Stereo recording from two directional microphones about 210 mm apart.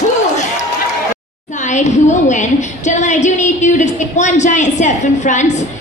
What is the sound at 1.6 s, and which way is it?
A woman's voice, 35° left (ahead or behind).